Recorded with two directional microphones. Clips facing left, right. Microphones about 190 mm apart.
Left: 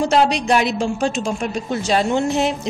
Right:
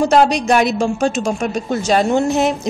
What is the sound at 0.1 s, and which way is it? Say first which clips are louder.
A woman's voice: right 3 dB; 45° right (ahead or behind).